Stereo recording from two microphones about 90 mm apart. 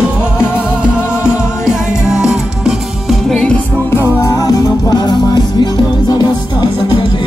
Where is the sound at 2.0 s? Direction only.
5° right (ahead or behind).